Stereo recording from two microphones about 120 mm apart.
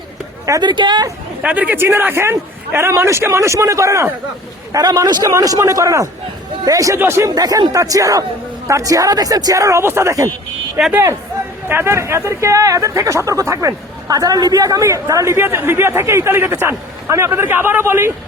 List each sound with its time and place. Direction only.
0.6 s speech: 40° right (ahead or behind)
1.4 s speech: 10° right (ahead or behind)